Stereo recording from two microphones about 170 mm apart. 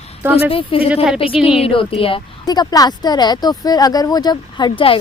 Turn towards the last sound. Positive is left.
turn(degrees=30)  # may be behind; listen again after turning